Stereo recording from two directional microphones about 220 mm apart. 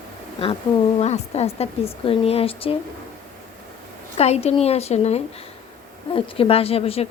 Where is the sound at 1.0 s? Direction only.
30° left (ahead or behind).